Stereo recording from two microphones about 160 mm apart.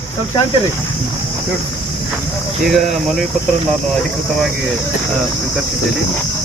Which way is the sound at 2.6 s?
Centre (ahead or behind).